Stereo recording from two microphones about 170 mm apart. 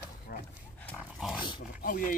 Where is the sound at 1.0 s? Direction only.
Centre (ahead or behind).